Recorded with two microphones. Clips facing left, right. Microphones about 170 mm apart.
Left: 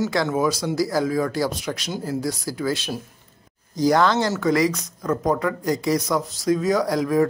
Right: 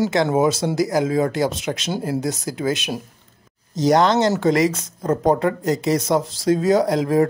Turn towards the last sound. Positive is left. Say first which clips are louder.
# right 3 dB
turn(degrees=-25)  # may be behind; listen again after turning